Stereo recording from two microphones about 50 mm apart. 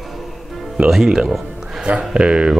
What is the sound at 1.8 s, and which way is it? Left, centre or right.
Speech, right.